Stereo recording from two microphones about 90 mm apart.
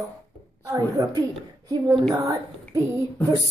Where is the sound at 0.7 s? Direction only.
40° right (ahead or behind).